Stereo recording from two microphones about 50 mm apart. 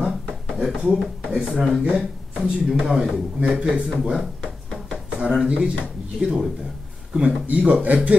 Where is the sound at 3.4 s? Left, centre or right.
Right.